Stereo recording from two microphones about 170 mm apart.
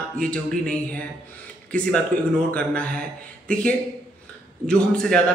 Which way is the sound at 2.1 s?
55° right (ahead or behind).